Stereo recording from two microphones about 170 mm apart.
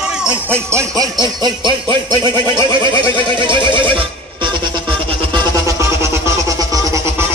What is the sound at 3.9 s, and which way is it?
Music, 30° right (ahead or behind).